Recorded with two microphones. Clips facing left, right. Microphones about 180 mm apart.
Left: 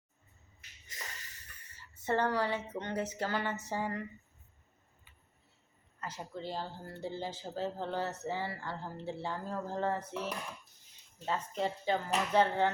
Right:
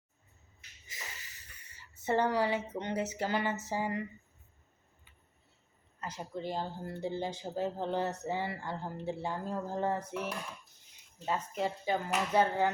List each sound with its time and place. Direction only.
2.0 s speech: 10° right (ahead or behind)
6.0 s speech: 15° right (ahead or behind)